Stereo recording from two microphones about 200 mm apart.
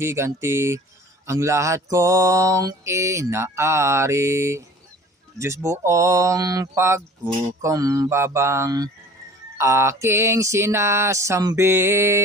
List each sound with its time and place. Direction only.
0.0 s speech: 15° right (ahead or behind)
5.7 s speech: 15° right (ahead or behind)